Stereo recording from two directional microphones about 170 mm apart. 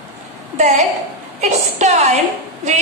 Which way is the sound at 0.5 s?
40° right (ahead or behind).